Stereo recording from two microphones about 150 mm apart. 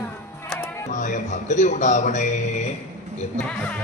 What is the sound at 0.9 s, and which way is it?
Speech, 55° left (ahead or behind).